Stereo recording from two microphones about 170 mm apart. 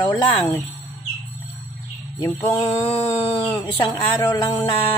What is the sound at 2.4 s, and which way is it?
A man's voice, 15° left (ahead or behind).